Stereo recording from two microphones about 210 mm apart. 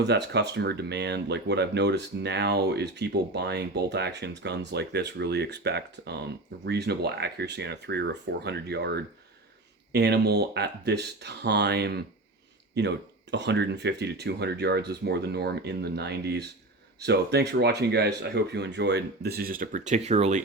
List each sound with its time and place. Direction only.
0.0 s speech: 55° right (ahead or behind); by 20.4 s 30° right (ahead or behind)